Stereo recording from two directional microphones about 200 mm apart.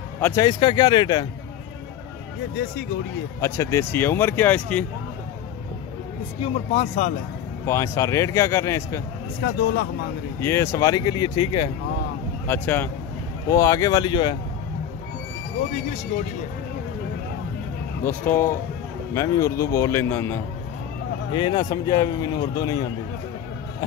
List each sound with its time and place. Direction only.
0.2 s speech: 15° left (ahead or behind)
3.3 s speech: 15° left (ahead or behind)
6.4 s speech: 30° left (ahead or behind)
7.6 s speech: 15° left (ahead or behind)
9.4 s speech: 55° left (ahead or behind)
10.4 s speech: 10° left (ahead or behind)
12.4 s speech: 10° left (ahead or behind)
18.0 s speech: 10° left (ahead or behind)
21.3 s speech: 25° left (ahead or behind)